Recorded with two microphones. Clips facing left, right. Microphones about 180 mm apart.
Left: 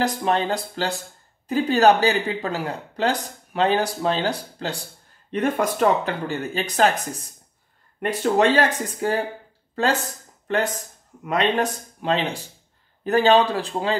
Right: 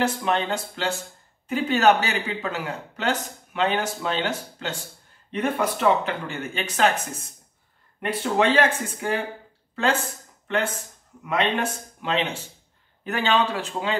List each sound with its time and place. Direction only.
0.0 s speech: 35° left (ahead or behind)
11.2 s speech: 40° left (ahead or behind)